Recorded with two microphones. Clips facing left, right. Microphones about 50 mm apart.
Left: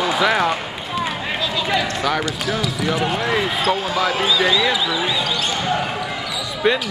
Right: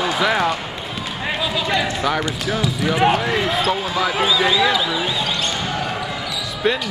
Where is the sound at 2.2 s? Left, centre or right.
Centre.